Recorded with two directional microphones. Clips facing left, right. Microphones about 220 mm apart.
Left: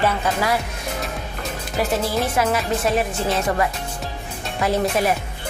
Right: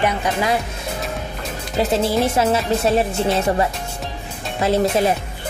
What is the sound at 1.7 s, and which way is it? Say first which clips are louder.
Speech: right 4 dB; 25° right (ahead or behind).